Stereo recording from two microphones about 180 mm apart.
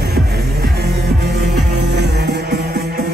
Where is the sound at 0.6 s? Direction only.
65° right (ahead or behind).